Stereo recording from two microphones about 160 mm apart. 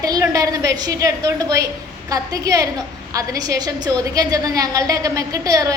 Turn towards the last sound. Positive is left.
turn(degrees=-20)  # may be behind; listen again after turning